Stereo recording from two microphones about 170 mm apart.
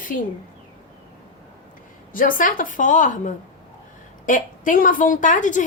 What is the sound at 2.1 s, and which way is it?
A woman's voice, 55° left (ahead or behind).